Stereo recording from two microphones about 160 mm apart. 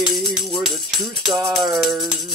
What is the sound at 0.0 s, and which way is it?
Music, centre (ahead or behind).